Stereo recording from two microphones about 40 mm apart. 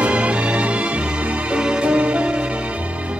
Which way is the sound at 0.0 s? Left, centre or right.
Right.